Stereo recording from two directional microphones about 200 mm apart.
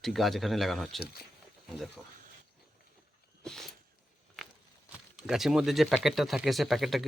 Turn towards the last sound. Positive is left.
turn(degrees=0)  # may be behind; listen again after turning